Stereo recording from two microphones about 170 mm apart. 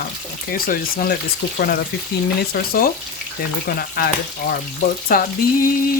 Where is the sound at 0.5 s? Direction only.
60° left (ahead or behind).